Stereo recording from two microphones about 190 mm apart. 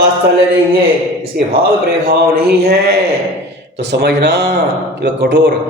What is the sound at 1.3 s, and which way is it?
Speech, 55° right (ahead or behind).